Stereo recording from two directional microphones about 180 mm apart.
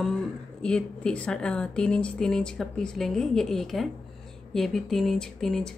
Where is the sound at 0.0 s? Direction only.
5° left (ahead or behind).